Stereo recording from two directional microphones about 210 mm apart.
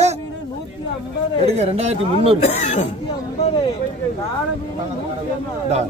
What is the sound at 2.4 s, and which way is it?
Speech, 35° left (ahead or behind).